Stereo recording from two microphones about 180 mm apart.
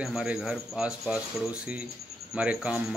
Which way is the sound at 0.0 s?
5° right (ahead or behind).